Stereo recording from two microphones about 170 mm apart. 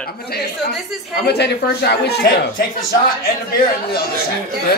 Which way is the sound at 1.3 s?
75° left (ahead or behind).